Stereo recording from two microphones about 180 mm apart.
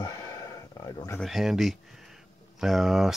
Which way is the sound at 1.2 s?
Centre (ahead or behind).